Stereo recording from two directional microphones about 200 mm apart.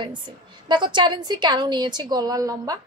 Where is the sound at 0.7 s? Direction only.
25° right (ahead or behind).